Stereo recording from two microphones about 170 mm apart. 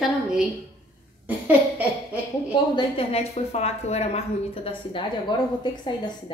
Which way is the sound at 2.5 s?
35° left (ahead or behind).